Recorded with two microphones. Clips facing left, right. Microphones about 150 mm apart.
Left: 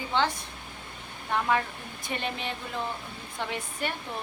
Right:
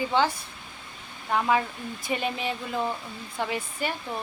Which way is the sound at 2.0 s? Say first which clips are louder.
Right 4 dB; 5° right (ahead or behind).